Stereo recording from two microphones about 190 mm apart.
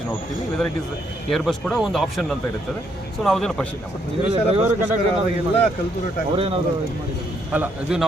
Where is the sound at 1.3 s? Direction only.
5° left (ahead or behind).